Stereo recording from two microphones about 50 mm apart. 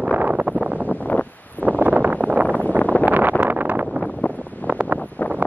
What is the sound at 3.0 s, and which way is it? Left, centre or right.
Wind noise, right.